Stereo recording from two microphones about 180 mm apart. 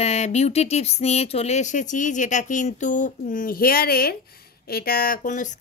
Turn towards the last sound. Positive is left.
turn(degrees=45)  # may be behind; listen again after turning